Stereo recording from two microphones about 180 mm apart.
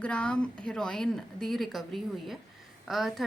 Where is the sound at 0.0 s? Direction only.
5° left (ahead or behind).